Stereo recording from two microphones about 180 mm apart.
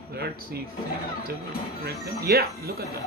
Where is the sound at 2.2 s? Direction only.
60° right (ahead or behind).